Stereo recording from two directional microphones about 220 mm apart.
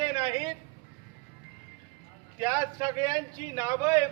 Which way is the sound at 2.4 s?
15° right (ahead or behind).